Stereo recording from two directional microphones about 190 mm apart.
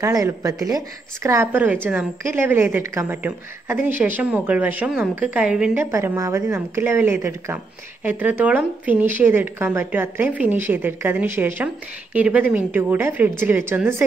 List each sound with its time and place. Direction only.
0.0 s speech: 15° right (ahead or behind)